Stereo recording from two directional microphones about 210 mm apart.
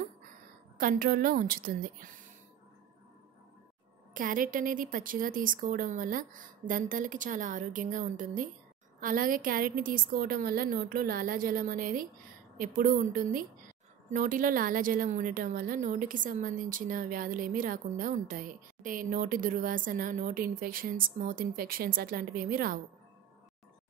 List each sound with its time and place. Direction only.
0.7 s a woman's voice: 40° right (ahead or behind)
4.1 s a woman's voice: 40° right (ahead or behind)